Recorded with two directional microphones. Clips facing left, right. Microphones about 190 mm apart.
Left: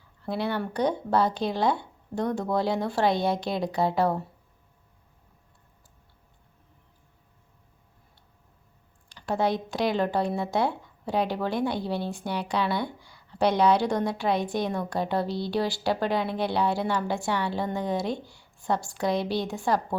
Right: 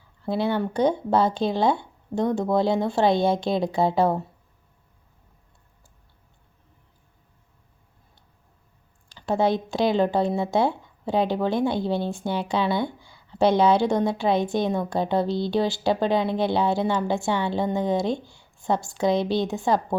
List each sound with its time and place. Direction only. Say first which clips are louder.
0.3 s speech: right 5 dB; 25° right (ahead or behind)
9.1 s speech: right 4 dB; 25° right (ahead or behind)